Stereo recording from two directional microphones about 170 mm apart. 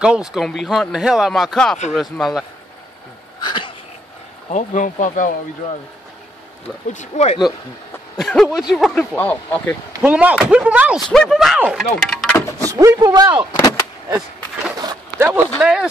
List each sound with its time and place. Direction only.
0.0 s speech: 5° right (ahead or behind)
3.3 s a sound: 25° left (ahead or behind)
4.5 s speech: 45° left (ahead or behind)
6.9 s speech: 45° left (ahead or behind)
8.5 s speech: 5° right (ahead or behind)
9.1 s speech: 10° left (ahead or behind)
10.0 s speech: 10° right (ahead or behind)
12.5 s speech: 20° right (ahead or behind)
13.6 s vehicle: 20° left (ahead or behind)
14.8 s a sound: 20° right (ahead or behind)
15.6 s speech: 5° right (ahead or behind)